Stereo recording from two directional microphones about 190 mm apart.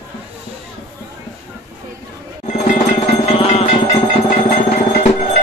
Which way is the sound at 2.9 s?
30° left (ahead or behind).